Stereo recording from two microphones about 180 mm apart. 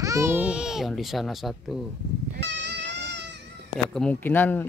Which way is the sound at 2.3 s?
75° right (ahead or behind).